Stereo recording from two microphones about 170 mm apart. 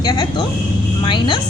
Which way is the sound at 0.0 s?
25° left (ahead or behind).